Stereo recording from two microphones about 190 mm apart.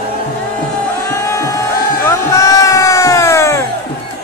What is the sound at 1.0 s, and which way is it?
Music, 15° left (ahead or behind).